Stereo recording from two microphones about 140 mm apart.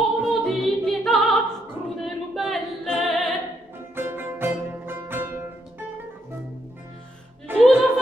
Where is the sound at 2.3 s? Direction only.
Centre (ahead or behind).